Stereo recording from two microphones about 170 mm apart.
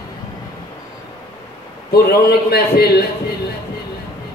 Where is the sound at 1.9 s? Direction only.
65° left (ahead or behind).